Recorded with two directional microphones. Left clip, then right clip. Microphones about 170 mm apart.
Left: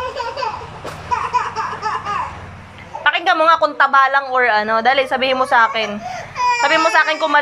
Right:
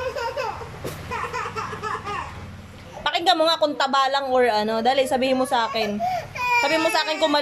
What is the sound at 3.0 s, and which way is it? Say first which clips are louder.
A woman's voice: left 5 dB; 30° right (ahead or behind).